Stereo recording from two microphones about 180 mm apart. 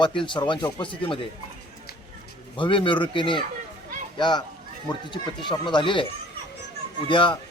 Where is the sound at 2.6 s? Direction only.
30° left (ahead or behind).